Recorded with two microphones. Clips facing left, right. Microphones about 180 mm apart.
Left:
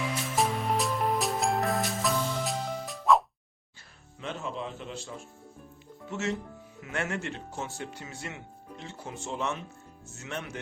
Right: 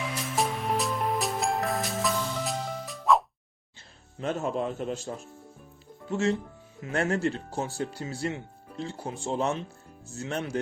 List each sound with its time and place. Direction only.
0.3 s music: centre (ahead or behind)
4.2 s a man's voice: 45° right (ahead or behind)
6.1 s speech: 30° right (ahead or behind)